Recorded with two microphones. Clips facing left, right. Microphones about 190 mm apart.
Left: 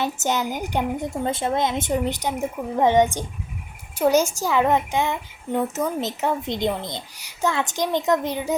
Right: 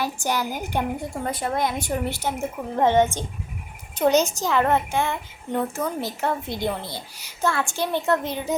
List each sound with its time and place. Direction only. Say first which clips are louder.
0.0 s a woman's voice: left 2 dB; 20° left (ahead or behind)